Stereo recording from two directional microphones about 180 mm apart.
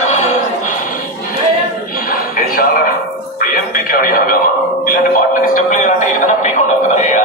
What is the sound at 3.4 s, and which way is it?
Music, 50° left (ahead or behind).